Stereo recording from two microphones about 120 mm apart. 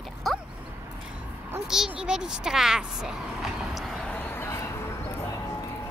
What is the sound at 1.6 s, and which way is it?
Speech, 5° right (ahead or behind).